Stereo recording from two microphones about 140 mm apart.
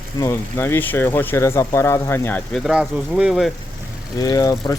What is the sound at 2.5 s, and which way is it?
Speech, centre (ahead or behind).